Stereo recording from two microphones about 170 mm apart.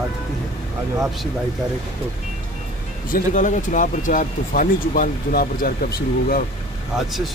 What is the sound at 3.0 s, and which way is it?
Speech, 50° left (ahead or behind).